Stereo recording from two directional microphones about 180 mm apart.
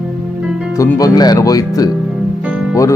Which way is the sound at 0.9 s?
20° left (ahead or behind).